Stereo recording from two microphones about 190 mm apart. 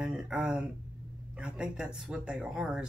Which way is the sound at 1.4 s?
5° right (ahead or behind).